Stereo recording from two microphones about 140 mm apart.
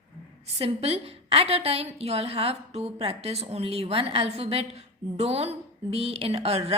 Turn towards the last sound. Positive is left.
turn(degrees=-45)  # may be behind; listen again after turning